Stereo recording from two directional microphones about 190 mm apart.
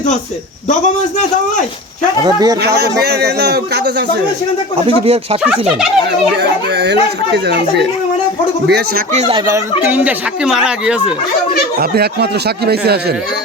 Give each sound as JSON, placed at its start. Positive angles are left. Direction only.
{"t": 2.2, "sound": "speech", "side_deg": -20}
{"t": 2.6, "sound": "speech", "side_deg": -60}
{"t": 5.0, "sound": "speech", "side_deg": -30}
{"t": 5.4, "sound": "speech", "side_deg": -5}
{"t": 9.1, "sound": "speech", "side_deg": -35}
{"t": 9.9, "sound": "speech", "side_deg": -10}
{"t": 11.8, "sound": "speech", "side_deg": -55}